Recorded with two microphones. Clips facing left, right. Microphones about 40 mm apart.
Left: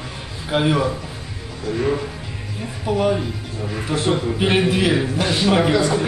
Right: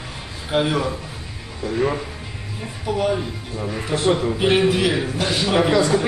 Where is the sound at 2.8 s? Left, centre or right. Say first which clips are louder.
Left 2 dB; centre.